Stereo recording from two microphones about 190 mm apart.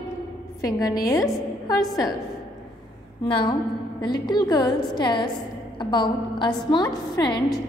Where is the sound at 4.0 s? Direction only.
20° left (ahead or behind).